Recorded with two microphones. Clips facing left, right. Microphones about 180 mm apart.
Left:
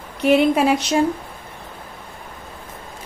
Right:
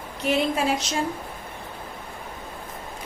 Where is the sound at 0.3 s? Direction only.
65° left (ahead or behind).